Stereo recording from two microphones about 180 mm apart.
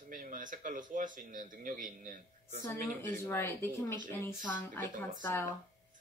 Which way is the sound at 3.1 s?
15° left (ahead or behind).